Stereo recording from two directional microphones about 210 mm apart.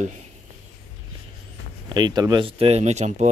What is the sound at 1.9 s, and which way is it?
Speech, 20° right (ahead or behind).